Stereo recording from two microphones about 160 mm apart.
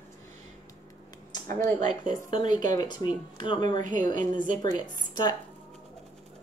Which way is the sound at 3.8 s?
50° right (ahead or behind).